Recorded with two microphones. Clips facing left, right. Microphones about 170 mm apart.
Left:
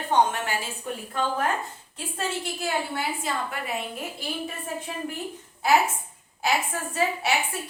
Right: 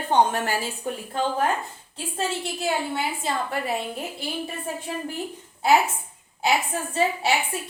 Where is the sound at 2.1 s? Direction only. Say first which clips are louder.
Right 2 dB; 30° right (ahead or behind).